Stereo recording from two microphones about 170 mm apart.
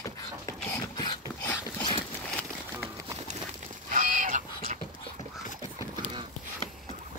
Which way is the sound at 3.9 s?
50° right (ahead or behind).